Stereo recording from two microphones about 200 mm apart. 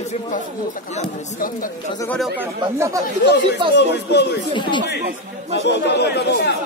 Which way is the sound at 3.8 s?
55° left (ahead or behind).